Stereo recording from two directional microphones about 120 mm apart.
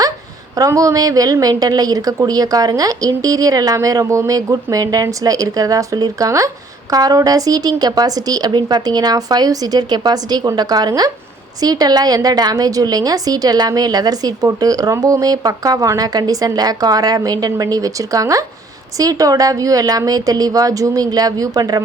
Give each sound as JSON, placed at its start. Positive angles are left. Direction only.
{"t": 0.5, "sound": "a woman's voice", "side_deg": -30}